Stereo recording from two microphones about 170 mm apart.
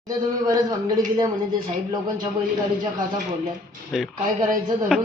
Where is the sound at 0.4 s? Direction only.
20° right (ahead or behind).